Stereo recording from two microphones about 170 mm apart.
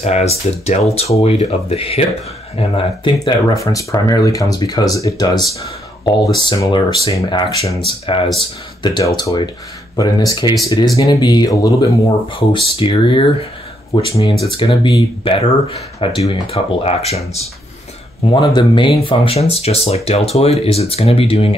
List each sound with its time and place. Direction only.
0.0 s speech: 40° left (ahead or behind); by 12.4 s 20° left (ahead or behind)
12.4 s speech: 30° left (ahead or behind)
18.3 s speech: 25° left (ahead or behind)